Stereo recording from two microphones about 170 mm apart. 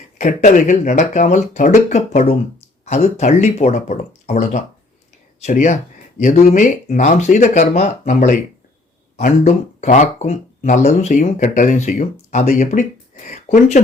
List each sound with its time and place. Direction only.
0.2 s speech: 45° left (ahead or behind)